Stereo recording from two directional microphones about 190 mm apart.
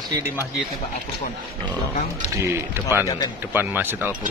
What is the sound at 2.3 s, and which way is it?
Speech, 15° right (ahead or behind).